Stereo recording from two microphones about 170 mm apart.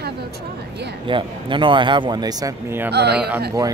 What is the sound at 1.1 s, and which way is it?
Speech, 30° right (ahead or behind).